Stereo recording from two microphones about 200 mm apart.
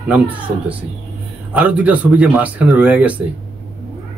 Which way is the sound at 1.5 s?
5° right (ahead or behind).